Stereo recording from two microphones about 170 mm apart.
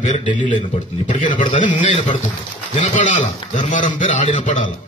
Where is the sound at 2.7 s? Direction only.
45° left (ahead or behind).